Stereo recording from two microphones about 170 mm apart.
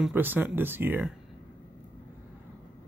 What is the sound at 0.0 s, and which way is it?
Speech, 10° right (ahead or behind).